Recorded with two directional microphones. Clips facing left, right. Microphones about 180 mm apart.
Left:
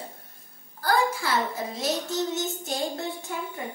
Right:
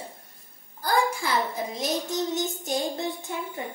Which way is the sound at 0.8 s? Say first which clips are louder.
Even; 15° right (ahead or behind).